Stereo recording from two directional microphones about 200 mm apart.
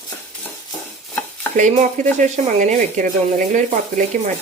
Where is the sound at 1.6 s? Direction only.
40° right (ahead or behind).